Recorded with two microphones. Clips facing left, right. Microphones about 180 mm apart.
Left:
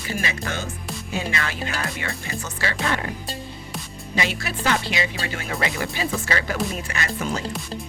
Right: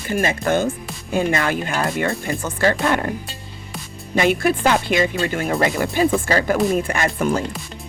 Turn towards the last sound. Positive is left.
turn(degrees=-55)  # may be behind; listen again after turning